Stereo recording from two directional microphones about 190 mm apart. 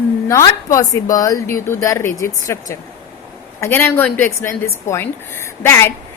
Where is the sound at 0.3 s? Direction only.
15° left (ahead or behind).